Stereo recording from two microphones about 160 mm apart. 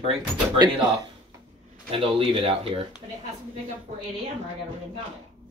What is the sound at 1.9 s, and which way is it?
Speech, 35° right (ahead or behind).